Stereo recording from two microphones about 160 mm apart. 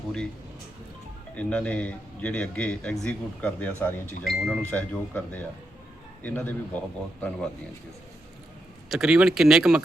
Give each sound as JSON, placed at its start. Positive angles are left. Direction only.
{"t": 1.4, "sound": "a man's voice", "side_deg": 10}
{"t": 4.2, "sound": "a man's voice", "side_deg": 0}
{"t": 8.9, "sound": "speech", "side_deg": -5}